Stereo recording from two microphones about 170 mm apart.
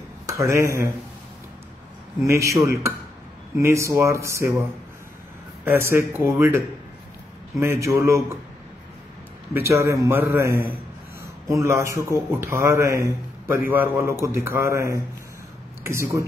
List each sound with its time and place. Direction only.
0.3 s speech: 15° right (ahead or behind)
2.2 s speech: 15° right (ahead or behind)
5.7 s speech: 15° right (ahead or behind)
7.6 s speech: 15° right (ahead or behind)
9.5 s speech: 15° right (ahead or behind)